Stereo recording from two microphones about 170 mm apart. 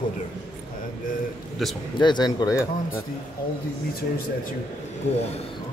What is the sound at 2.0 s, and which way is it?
Speech, 25° left (ahead or behind).